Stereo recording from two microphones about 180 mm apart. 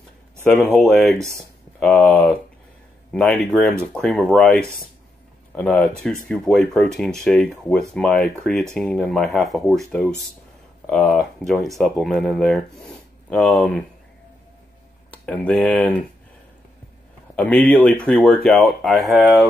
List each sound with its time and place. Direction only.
0.5 s speech: 5° left (ahead or behind)
15.0 s speech: 10° left (ahead or behind)
17.4 s speech: 5° left (ahead or behind)